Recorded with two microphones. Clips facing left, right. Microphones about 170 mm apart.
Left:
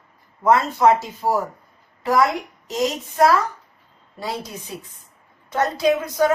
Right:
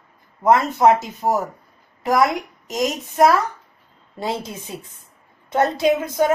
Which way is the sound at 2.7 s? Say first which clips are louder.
Even; 15° right (ahead or behind).